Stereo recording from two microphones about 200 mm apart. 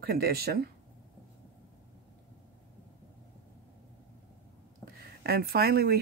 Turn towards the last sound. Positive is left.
turn(degrees=-50)  # may be behind; listen again after turning